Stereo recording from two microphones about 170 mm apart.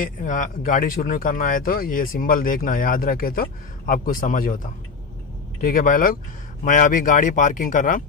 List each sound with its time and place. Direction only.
0.0 s speech: 50° left (ahead or behind)
5.6 s speech: 55° left (ahead or behind)